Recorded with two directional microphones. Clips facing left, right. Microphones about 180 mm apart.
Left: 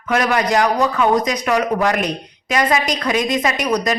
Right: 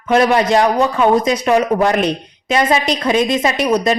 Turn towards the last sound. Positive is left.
turn(degrees=-25)  # may be behind; listen again after turning